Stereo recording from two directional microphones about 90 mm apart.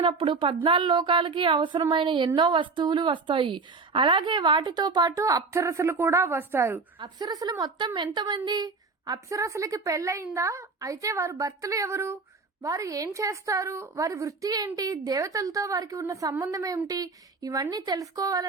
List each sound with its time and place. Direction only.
0.0 s speech: 85° right; by 6.8 s 25° right (ahead or behind)
7.0 s a woman's voice: 50° right (ahead or behind)